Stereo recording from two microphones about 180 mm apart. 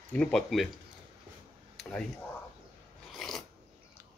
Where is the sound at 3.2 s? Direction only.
Centre (ahead or behind).